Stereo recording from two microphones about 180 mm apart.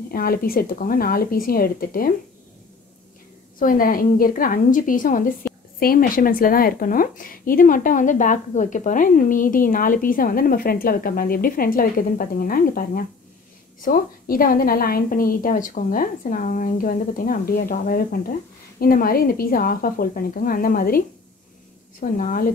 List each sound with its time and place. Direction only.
0.1 s a woman's voice: 55° left (ahead or behind)
3.5 s a woman's voice: 50° left (ahead or behind)
22.1 s a woman's voice: 50° left (ahead or behind)